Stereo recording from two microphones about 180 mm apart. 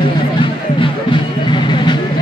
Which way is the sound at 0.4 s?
25° left (ahead or behind).